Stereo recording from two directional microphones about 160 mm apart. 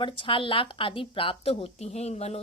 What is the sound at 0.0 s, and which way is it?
A woman's voice, 30° left (ahead or behind).